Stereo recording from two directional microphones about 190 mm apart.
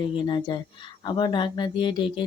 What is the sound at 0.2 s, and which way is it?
Speech, 25° left (ahead or behind).